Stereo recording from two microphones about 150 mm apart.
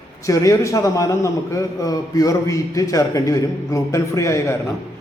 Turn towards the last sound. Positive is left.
turn(degrees=20)  # may be behind; listen again after turning